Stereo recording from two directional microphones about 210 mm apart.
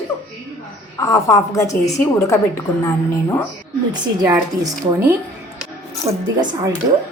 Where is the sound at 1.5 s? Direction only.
15° left (ahead or behind).